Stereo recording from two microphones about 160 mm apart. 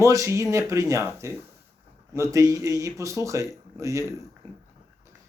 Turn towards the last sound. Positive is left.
turn(degrees=-20)  # may be behind; listen again after turning